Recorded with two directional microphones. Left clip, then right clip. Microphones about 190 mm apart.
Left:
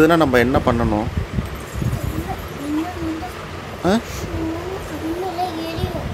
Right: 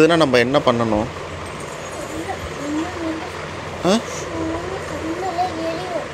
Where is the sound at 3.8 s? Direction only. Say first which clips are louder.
Right 1 dB; 15° left (ahead or behind).